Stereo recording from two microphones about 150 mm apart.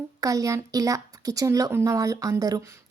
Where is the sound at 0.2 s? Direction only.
20° right (ahead or behind).